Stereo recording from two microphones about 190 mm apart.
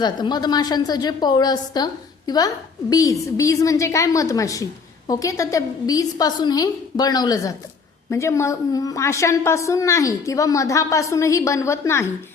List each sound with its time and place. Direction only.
0.0 s a woman's voice: 20° left (ahead or behind)